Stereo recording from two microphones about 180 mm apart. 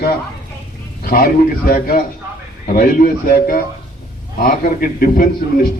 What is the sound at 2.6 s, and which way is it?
A man's voice, 55° left (ahead or behind).